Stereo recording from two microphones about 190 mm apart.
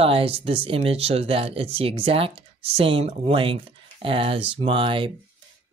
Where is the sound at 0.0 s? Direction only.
30° right (ahead or behind).